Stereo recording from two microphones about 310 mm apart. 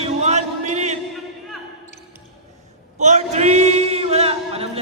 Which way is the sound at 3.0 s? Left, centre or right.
Right.